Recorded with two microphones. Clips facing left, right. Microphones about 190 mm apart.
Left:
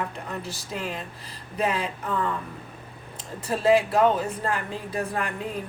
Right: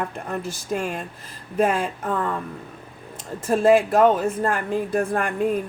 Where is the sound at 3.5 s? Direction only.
50° right (ahead or behind).